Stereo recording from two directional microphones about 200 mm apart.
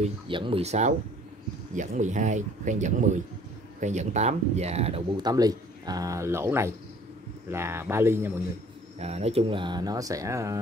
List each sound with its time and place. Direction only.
0.0 s speech: 25° right (ahead or behind)
5.2 s speech: 20° right (ahead or behind)
9.0 s speech: 30° right (ahead or behind); by 10.6 s 15° right (ahead or behind)